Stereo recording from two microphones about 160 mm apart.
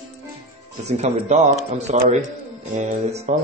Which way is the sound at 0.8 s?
45° right (ahead or behind).